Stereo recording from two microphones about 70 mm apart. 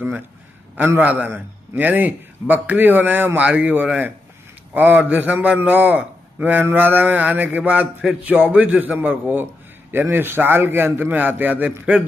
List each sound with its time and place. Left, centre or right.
0.7 s a man's voice: right